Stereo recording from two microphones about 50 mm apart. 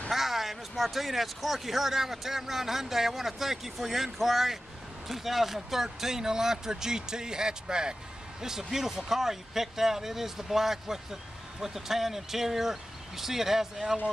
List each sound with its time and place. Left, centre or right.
0.1 s speech: centre